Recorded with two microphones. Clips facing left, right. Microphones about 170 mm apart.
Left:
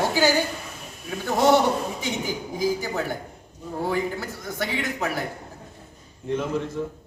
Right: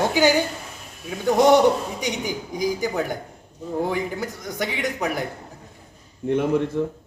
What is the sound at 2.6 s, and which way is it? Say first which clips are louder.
A woman's voice: right 2 dB; 15° right (ahead or behind).